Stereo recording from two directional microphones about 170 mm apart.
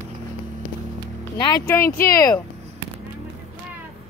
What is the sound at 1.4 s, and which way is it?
Speech, 20° left (ahead or behind).